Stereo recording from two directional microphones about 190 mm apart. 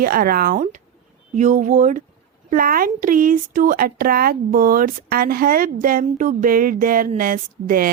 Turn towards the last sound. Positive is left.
turn(degrees=-50)  # may be behind; listen again after turning